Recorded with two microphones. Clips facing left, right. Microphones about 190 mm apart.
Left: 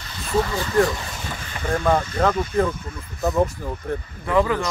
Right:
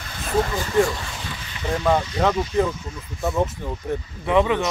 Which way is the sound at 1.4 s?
50° left (ahead or behind).